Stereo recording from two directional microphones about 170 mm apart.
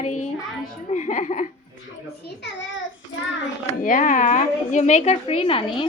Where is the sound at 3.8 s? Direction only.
50° left (ahead or behind); by 5.8 s 30° left (ahead or behind).